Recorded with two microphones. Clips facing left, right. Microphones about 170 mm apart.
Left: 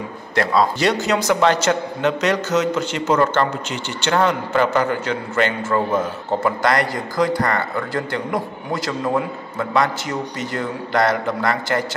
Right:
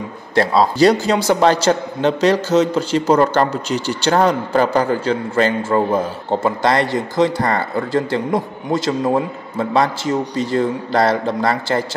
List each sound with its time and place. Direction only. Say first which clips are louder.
0.3 s a man's voice: right 3 dB; 30° right (ahead or behind)